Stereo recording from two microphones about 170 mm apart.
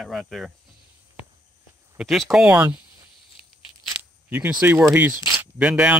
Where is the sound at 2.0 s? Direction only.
Centre (ahead or behind).